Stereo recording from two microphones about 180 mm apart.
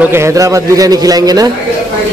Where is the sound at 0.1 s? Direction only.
15° right (ahead or behind).